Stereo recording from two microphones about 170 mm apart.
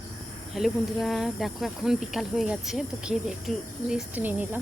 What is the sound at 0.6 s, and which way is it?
Cricket, centre (ahead or behind).